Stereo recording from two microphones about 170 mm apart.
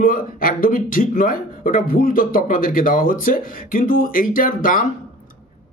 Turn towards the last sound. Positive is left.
turn(degrees=55)  # may be behind; listen again after turning